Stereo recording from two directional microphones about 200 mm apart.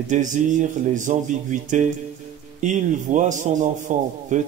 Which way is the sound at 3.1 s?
40° right (ahead or behind).